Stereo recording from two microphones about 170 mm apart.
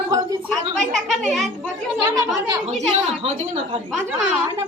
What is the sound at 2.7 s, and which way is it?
A woman's voice, 40° right (ahead or behind).